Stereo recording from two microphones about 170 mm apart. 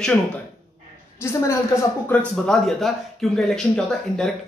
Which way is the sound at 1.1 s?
15° left (ahead or behind).